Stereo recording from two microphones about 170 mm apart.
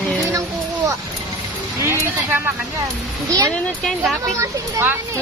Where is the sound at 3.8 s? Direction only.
Centre (ahead or behind).